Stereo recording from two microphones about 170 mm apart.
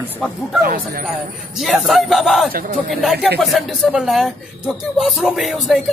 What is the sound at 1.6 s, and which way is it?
Speech, centre (ahead or behind).